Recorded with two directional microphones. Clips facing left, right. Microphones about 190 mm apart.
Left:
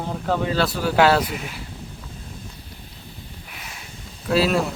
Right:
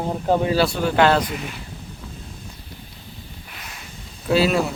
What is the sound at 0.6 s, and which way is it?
Speech, 5° left (ahead or behind).